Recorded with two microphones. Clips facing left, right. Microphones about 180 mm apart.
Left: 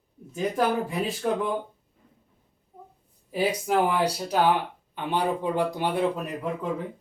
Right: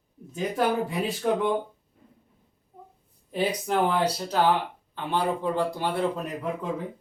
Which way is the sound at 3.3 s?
5° left (ahead or behind).